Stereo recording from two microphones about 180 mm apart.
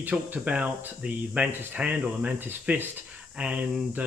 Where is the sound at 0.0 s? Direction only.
10° right (ahead or behind).